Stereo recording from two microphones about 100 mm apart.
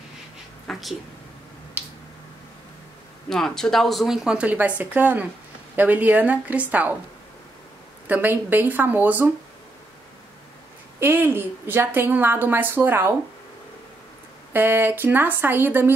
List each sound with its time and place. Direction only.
0.7 s a sound: centre (ahead or behind)
3.3 s a woman's voice: 5° left (ahead or behind); by 6.9 s 15° right (ahead or behind)
8.1 s a woman's voice: 20° right (ahead or behind)
11.0 s a woman's voice: 20° right (ahead or behind)
14.5 s a woman's voice: 20° right (ahead or behind)